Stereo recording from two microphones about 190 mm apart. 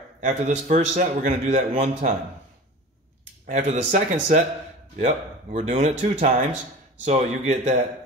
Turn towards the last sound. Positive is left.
turn(degrees=-35)  # may be behind; listen again after turning